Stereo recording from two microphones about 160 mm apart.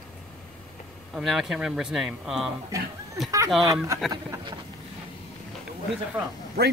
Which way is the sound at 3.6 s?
20° right (ahead or behind).